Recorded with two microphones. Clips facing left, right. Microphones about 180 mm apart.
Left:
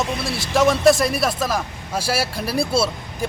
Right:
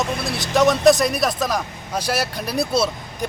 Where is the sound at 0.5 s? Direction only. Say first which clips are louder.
Right 1 dB; 5° left (ahead or behind).